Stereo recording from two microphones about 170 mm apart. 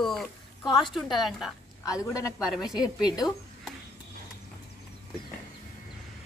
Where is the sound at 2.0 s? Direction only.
20° left (ahead or behind).